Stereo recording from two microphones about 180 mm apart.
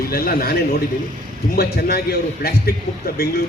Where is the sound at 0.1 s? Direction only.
55° left (ahead or behind).